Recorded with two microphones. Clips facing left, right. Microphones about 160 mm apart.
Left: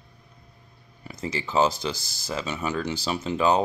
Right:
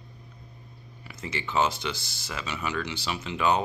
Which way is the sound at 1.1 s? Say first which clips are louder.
Left 4 dB; 40° left (ahead or behind).